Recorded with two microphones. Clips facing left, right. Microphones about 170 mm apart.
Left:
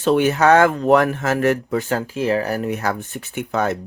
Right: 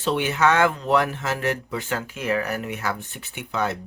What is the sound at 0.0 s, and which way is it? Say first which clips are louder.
Speech: left 6 dB; 45° left (ahead or behind).